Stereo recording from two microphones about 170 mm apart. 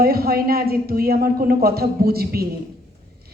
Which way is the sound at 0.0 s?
60° right (ahead or behind).